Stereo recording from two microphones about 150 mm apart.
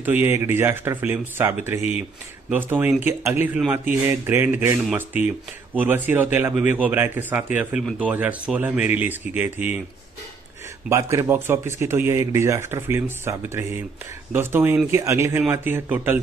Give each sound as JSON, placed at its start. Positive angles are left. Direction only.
{"t": 0.0, "sound": "speech", "side_deg": -15}
{"t": 10.9, "sound": "speech", "side_deg": -20}